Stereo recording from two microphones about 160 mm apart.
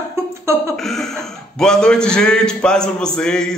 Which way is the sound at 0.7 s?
Centre (ahead or behind).